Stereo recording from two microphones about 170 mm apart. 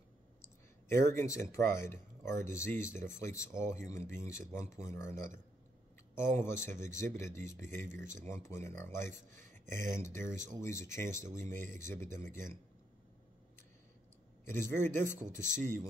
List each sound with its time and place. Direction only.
0.4 s speech: 15° left (ahead or behind)
14.4 s speech: 15° left (ahead or behind)